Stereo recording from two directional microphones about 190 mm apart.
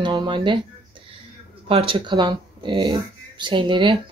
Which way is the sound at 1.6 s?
30° right (ahead or behind).